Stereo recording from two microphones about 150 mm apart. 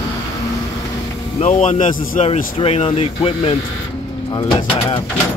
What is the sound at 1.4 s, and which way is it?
Speech, 55° left (ahead or behind).